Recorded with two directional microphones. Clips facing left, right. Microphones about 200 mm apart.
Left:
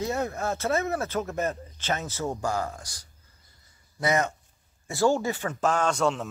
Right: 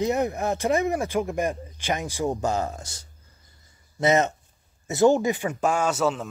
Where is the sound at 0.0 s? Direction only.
15° right (ahead or behind).